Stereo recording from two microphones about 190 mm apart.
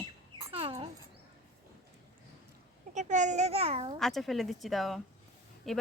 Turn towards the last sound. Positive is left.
turn(degrees=0)  # may be behind; listen again after turning